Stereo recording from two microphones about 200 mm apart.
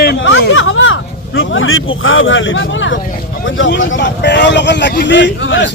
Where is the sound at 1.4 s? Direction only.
80° left.